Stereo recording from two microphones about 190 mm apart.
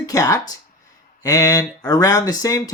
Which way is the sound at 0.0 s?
20° left (ahead or behind).